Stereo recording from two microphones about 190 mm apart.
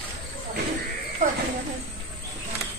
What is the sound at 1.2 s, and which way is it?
Snake, 40° right (ahead or behind).